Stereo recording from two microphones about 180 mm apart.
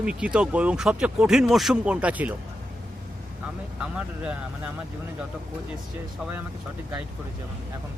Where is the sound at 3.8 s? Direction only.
5° right (ahead or behind).